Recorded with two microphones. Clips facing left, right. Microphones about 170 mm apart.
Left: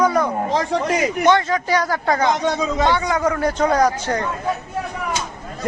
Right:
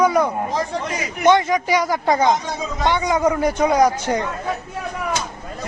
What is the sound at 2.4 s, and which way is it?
Speech, 75° left (ahead or behind).